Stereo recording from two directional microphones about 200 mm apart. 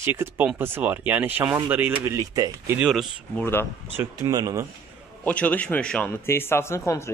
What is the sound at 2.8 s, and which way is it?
Speech, centre (ahead or behind).